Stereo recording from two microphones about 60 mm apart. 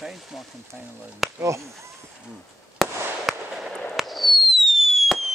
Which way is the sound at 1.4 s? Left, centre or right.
Right.